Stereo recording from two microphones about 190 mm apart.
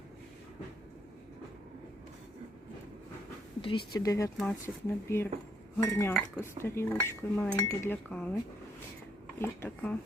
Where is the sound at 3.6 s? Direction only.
25° left (ahead or behind); by 8.3 s 5° left (ahead or behind).